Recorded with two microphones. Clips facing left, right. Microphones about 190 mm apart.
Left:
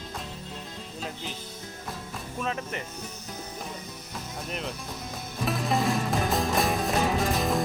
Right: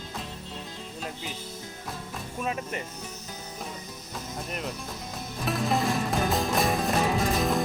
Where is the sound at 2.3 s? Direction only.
15° right (ahead or behind).